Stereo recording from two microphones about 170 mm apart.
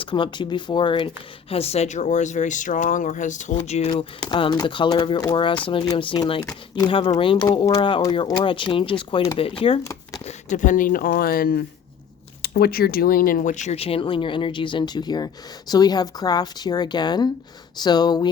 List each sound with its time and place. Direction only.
0.0 s speech: 30° left (ahead or behind)
3.9 s speech: 25° left (ahead or behind)
10.2 s speech: 45° left (ahead or behind); by 18.3 s 25° left (ahead or behind)